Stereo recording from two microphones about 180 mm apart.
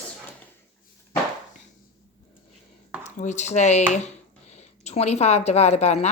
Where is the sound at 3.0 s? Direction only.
40° left (ahead or behind).